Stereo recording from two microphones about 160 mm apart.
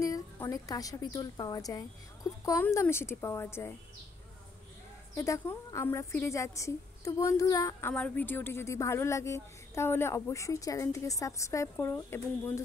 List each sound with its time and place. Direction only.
0.0 s a woman's voice: 20° left (ahead or behind)
5.1 s a woman's voice: 20° left (ahead or behind)
7.9 s speech: 10° left (ahead or behind)